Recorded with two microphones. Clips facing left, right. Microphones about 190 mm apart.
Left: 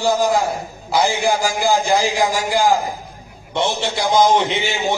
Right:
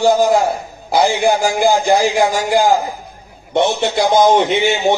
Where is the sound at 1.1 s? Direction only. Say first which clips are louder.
Right 4 dB; 65° right (ahead or behind).